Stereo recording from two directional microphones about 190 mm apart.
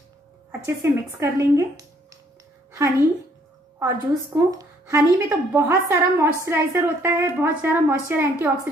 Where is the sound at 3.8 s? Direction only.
15° right (ahead or behind).